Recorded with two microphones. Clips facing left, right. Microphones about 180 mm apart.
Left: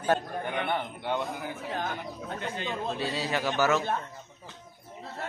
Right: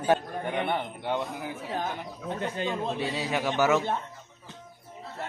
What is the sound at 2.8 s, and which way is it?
A man's voice, 15° right (ahead or behind).